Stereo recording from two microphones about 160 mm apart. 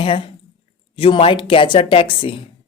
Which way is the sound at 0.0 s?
35° left (ahead or behind).